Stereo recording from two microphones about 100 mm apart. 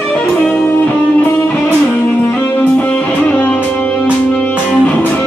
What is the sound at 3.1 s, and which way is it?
Music, 15° left (ahead or behind).